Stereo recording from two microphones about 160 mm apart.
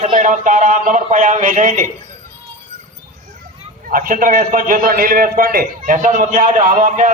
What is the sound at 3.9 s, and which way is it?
A man's voice, 60° right (ahead or behind).